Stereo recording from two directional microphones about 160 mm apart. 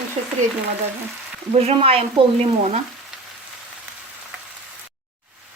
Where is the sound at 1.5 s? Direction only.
40° right (ahead or behind).